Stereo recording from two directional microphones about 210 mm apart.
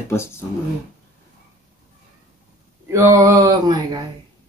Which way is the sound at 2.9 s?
15° right (ahead or behind).